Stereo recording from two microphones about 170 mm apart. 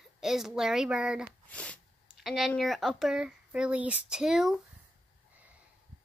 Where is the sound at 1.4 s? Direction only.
10° left (ahead or behind).